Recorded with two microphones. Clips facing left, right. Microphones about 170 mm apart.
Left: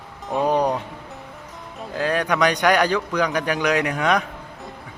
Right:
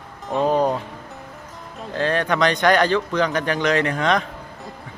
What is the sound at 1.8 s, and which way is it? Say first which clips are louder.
A man's voice: right 1 dB; 10° left (ahead or behind).